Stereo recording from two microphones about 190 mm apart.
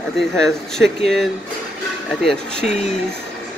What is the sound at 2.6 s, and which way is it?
Speech, 35° left (ahead or behind).